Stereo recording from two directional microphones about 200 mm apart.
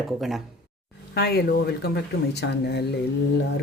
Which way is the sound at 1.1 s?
50° left (ahead or behind).